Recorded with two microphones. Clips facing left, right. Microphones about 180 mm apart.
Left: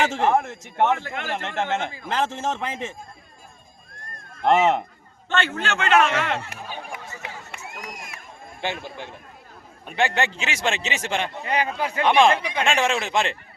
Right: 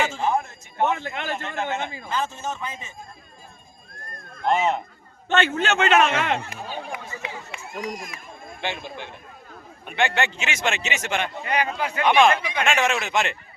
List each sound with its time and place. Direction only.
0.1 s a man's voice: 80° left
0.9 s a man's voice: 20° right (ahead or behind)
1.3 s a man's voice: 80° left
4.4 s speech: 75° left (ahead or behind)
5.3 s a man's voice: 20° right (ahead or behind)
8.6 s a man's voice: 40° left (ahead or behind)